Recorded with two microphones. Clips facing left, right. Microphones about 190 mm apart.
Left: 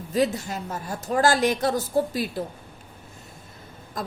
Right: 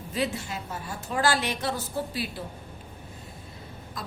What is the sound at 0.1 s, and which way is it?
A woman's voice, 40° left (ahead or behind).